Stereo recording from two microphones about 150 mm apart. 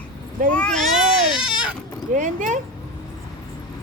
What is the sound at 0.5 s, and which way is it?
Speech, 5° left (ahead or behind).